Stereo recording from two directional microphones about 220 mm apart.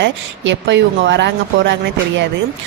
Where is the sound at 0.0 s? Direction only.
55° right (ahead or behind).